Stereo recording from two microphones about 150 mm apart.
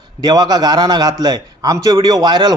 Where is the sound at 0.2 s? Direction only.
25° right (ahead or behind).